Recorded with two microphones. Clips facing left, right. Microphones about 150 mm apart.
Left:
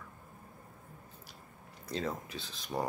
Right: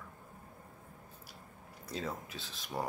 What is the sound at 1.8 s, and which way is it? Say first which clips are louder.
Speech: left 3 dB; 5° right (ahead or behind).